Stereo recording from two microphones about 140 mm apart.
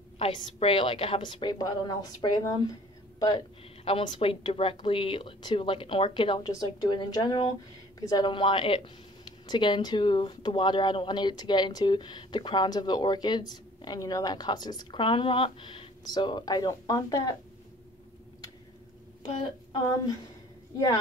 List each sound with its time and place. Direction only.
0.6 s speech: 40° left (ahead or behind)